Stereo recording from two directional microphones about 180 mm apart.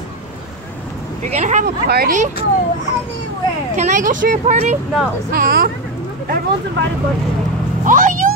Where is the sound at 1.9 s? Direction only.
55° right (ahead or behind).